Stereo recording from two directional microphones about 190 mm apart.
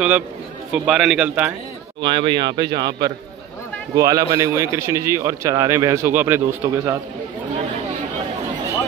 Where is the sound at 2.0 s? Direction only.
25° right (ahead or behind).